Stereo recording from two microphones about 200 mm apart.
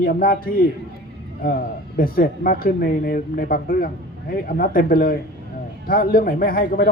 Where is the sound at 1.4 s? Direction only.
50° left (ahead or behind).